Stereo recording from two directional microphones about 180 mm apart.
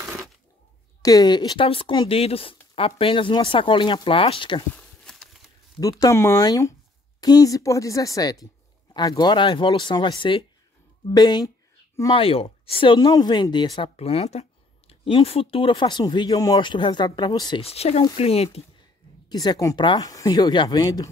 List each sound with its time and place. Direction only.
1.0 s speech: 20° left (ahead or behind)
4.7 s a sound: centre (ahead or behind)
5.8 s speech: 20° left (ahead or behind)
19.2 s speech: 25° left (ahead or behind)